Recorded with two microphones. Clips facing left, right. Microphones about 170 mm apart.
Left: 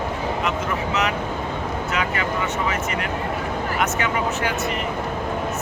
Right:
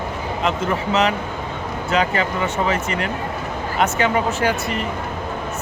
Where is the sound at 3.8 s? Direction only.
30° right (ahead or behind).